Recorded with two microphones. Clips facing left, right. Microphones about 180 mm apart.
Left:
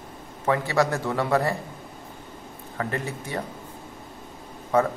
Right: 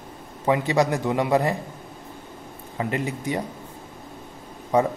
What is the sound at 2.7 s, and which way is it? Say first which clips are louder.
Speech: right 3 dB; 15° right (ahead or behind).